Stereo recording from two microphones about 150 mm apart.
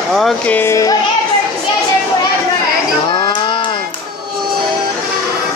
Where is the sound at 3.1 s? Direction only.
30° left (ahead or behind).